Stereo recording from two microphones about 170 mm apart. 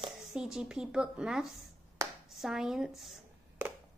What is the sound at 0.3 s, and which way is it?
A woman's voice, 5° right (ahead or behind).